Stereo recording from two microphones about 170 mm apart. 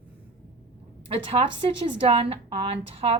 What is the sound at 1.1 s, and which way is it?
A woman's voice, 35° right (ahead or behind).